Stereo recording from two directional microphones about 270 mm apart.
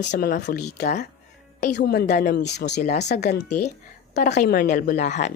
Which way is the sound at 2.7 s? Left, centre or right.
Left.